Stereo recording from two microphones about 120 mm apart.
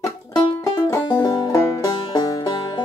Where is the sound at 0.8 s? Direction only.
30° left (ahead or behind).